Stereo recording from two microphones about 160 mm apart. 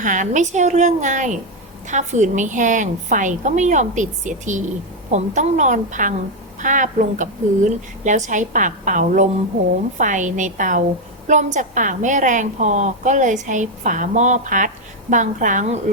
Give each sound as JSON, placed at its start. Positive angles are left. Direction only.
{"t": 0.0, "sound": "a woman's voice", "side_deg": -55}